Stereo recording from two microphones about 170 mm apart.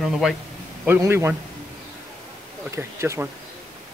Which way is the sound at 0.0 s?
Centre (ahead or behind).